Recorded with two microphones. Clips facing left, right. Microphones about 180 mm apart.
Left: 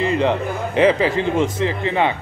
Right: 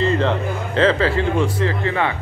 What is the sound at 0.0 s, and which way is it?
A man's voice, 15° left (ahead or behind).